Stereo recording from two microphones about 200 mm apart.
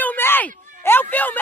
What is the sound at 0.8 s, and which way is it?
Speech, 10° left (ahead or behind).